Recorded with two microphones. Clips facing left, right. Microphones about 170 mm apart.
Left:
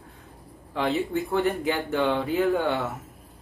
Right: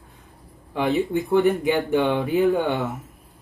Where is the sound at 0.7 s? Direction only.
15° right (ahead or behind).